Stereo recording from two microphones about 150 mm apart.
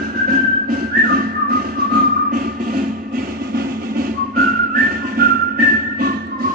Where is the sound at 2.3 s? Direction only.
65° right (ahead or behind).